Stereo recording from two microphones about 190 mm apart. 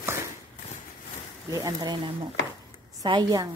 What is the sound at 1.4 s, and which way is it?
A woman's voice, 20° right (ahead or behind).